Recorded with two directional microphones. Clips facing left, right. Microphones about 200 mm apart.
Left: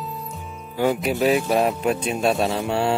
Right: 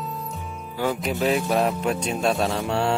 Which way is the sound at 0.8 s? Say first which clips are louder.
Left 4 dB; 20° left (ahead or behind).